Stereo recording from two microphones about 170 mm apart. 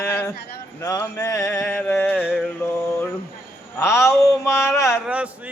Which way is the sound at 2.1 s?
5° right (ahead or behind).